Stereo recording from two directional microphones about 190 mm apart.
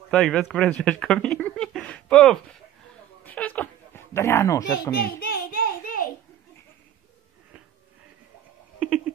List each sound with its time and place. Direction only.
0.1 s speech: centre (ahead or behind)
4.9 s child singing: 55° left (ahead or behind)